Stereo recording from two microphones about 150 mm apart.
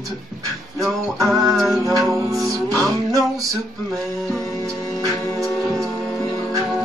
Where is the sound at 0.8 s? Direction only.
Centre (ahead or behind).